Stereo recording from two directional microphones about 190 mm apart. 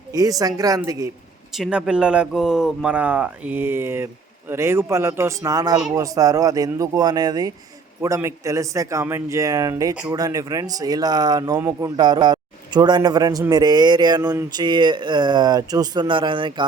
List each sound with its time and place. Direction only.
0.1 s speech: 20° right (ahead or behind)
1.5 s speech: 5° right (ahead or behind); by 16.6 s 25° right (ahead or behind)